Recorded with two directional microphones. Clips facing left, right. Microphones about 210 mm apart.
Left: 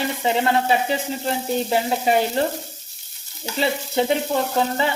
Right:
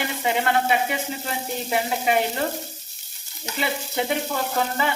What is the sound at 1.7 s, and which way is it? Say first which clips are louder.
Speech: left 1 dB; 30° left (ahead or behind).